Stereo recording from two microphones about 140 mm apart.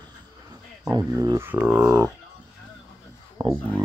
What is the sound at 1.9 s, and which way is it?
Speech, 25° right (ahead or behind).